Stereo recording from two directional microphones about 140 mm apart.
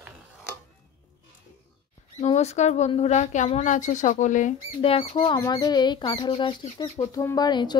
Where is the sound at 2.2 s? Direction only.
50° left (ahead or behind).